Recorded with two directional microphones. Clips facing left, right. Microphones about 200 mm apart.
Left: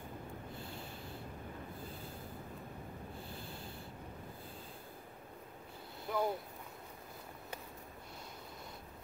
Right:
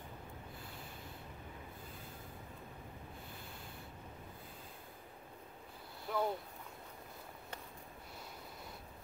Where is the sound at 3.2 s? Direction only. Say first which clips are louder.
Left 4 dB; 30° left (ahead or behind).